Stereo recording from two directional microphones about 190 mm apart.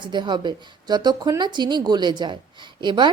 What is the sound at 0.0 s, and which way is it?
A woman's voice, 25° right (ahead or behind).